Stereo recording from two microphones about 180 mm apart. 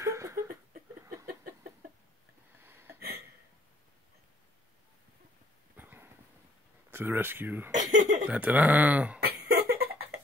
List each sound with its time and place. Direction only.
0.0 s a sound: 15° right (ahead or behind)
2.6 s a sound: 10° right (ahead or behind)
5.8 s horse: 10° right (ahead or behind)
6.9 s speech: 10° right (ahead or behind)
7.8 s speech: 45° right (ahead or behind)
8.3 s speech: 10° right (ahead or behind)
9.2 s cough: 60° right (ahead or behind)